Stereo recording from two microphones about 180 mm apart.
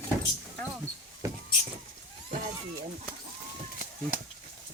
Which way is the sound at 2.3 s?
45° right (ahead or behind).